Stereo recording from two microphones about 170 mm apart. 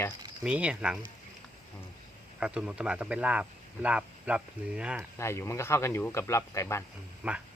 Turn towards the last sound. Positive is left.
turn(degrees=-10)  # may be behind; listen again after turning